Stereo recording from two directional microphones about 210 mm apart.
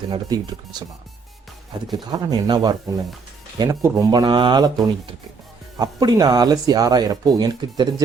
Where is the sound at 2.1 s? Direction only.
20° right (ahead or behind).